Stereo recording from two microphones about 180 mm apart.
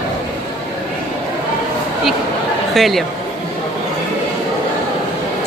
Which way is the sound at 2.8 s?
Centre (ahead or behind).